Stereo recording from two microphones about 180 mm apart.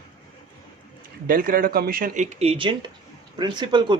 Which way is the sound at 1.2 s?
55° right (ahead or behind).